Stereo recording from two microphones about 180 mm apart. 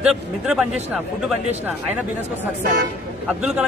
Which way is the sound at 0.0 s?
5° right (ahead or behind).